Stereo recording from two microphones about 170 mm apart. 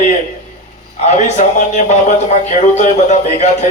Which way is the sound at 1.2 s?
45° left (ahead or behind).